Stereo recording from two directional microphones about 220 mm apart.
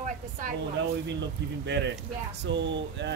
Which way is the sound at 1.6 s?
55° right (ahead or behind).